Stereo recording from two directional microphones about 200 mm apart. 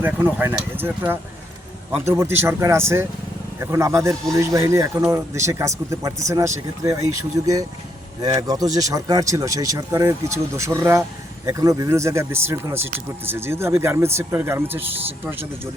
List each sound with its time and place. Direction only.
0.0 s speech: 10° right (ahead or behind)